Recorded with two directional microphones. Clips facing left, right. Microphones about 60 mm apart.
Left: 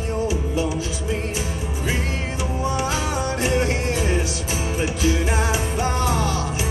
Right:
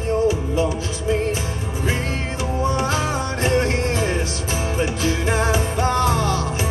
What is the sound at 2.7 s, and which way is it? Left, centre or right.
Music, right.